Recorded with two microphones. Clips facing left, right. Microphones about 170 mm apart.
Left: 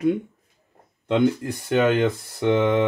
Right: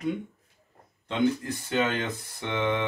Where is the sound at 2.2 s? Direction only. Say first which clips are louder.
Left 14 dB; 50° left (ahead or behind).